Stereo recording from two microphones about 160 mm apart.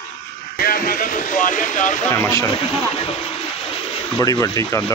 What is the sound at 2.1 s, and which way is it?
Speech, 15° left (ahead or behind).